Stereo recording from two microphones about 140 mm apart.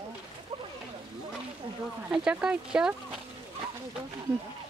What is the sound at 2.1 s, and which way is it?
Speech, 5° right (ahead or behind).